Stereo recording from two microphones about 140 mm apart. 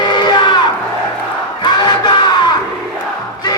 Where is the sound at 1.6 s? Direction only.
30° left (ahead or behind).